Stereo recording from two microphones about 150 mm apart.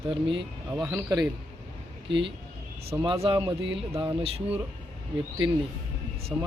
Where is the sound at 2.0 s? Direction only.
35° right (ahead or behind).